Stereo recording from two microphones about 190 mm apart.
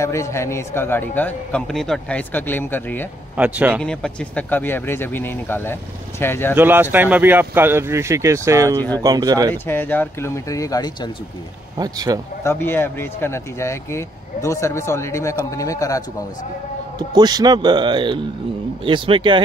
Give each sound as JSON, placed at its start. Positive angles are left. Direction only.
{"t": 0.0, "sound": "speech", "side_deg": 15}
{"t": 3.3, "sound": "speech", "side_deg": -10}
{"t": 3.8, "sound": "speech", "side_deg": 5}
{"t": 6.5, "sound": "speech", "side_deg": -10}
{"t": 9.5, "sound": "speech", "side_deg": 10}
{"t": 11.7, "sound": "speech", "side_deg": -20}
{"t": 12.4, "sound": "speech", "side_deg": 10}
{"t": 17.1, "sound": "speech", "side_deg": -20}